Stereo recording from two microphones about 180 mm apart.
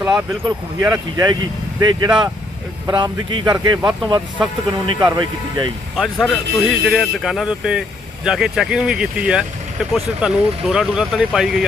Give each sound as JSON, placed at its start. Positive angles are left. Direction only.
{"t": 0.0, "sound": "speech", "side_deg": -5}
{"t": 0.8, "sound": "speech", "side_deg": -20}
{"t": 6.0, "sound": "speech", "side_deg": 0}